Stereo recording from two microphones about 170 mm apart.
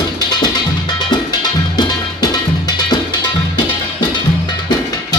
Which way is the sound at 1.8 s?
25° left (ahead or behind).